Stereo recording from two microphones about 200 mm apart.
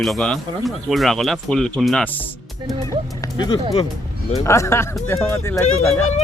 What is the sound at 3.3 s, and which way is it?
Speech, 20° left (ahead or behind).